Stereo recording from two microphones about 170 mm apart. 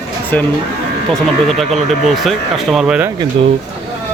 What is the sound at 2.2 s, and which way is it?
Speech, centre (ahead or behind).